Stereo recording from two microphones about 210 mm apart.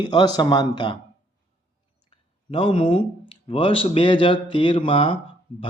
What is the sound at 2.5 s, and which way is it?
Speech, 25° left (ahead or behind).